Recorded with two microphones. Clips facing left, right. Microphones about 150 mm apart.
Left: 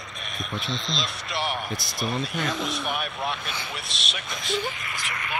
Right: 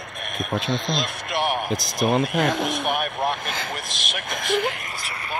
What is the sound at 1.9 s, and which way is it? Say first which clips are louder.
Speech: right 8 dB; 50° right (ahead or behind).